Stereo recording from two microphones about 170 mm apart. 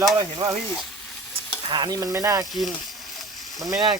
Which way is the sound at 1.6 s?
25° right (ahead or behind).